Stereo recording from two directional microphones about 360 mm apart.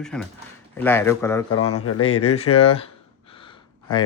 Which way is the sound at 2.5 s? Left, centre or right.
Centre.